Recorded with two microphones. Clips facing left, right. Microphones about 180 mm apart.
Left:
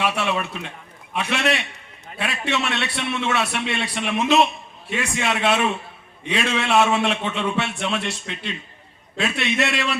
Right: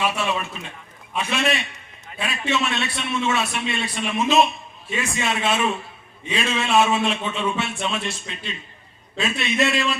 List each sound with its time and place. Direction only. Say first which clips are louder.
0.0 s a man's voice: left 1 dB; 65° left (ahead or behind)